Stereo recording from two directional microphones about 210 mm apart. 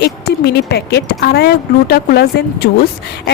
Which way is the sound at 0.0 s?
50° left (ahead or behind).